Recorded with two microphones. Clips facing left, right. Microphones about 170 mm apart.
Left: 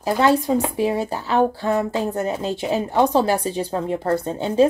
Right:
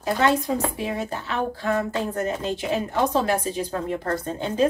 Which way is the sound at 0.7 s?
35° left (ahead or behind).